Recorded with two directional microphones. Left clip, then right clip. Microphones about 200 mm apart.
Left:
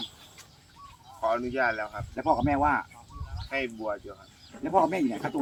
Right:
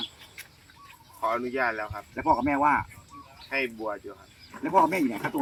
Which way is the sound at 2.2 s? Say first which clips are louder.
Right 1 dB; 10° right (ahead or behind).